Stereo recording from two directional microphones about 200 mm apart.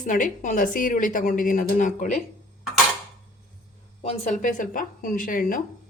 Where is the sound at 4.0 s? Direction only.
35° left (ahead or behind).